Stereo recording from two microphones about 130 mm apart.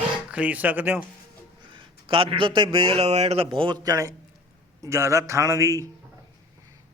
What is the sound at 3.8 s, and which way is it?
A man's voice, 25° right (ahead or behind).